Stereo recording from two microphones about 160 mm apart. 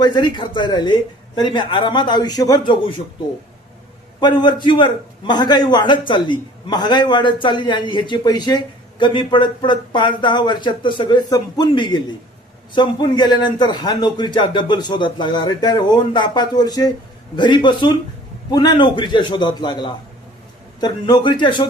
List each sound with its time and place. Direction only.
0.0 s a man's voice: 30° left (ahead or behind)
4.2 s a man's voice: 25° left (ahead or behind)